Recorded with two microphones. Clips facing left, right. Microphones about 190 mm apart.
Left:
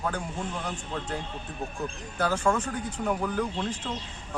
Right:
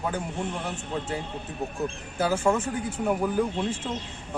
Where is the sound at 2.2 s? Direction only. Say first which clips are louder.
Right 2 dB; 10° right (ahead or behind).